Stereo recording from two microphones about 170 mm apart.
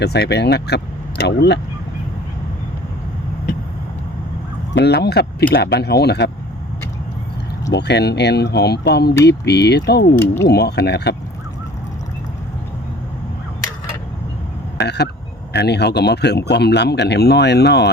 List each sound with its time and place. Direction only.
0.0 s speech: 75° left (ahead or behind)
4.7 s speech: 80° left
7.7 s speech: 80° left
14.8 s frog: 75° left (ahead or behind)
15.5 s speech: 75° left (ahead or behind)